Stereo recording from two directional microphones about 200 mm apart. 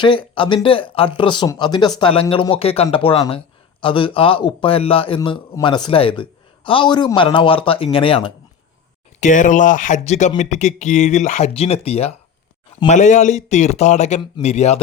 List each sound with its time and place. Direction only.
0.0 s speech: 25° left (ahead or behind)
9.2 s speech: 40° left (ahead or behind)